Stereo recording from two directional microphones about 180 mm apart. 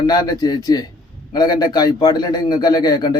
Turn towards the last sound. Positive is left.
turn(degrees=25)  # may be behind; listen again after turning